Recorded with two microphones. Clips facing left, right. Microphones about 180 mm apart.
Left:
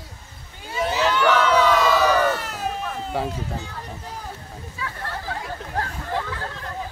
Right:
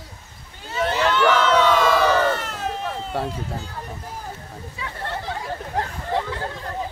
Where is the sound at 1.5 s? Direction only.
5° left (ahead or behind).